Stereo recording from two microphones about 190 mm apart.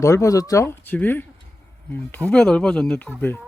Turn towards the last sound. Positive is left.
turn(degrees=10)  # may be behind; listen again after turning